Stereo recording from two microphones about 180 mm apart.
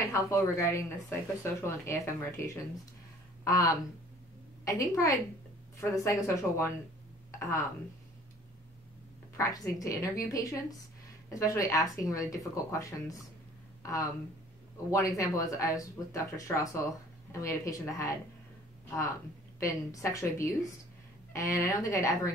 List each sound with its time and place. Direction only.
0.1 s speech: 15° left (ahead or behind)
9.4 s speech: 20° left (ahead or behind)
19.6 s speech: 20° left (ahead or behind)